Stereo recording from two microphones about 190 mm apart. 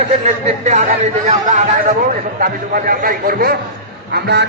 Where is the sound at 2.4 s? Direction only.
50° right (ahead or behind).